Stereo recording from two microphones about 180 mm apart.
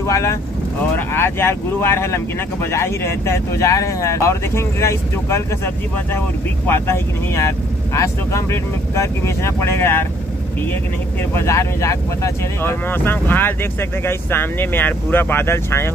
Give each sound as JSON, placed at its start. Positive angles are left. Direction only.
{"t": 0.0, "sound": "speech", "side_deg": 15}
{"t": 6.7, "sound": "speech", "side_deg": 15}
{"t": 11.3, "sound": "speech", "side_deg": 15}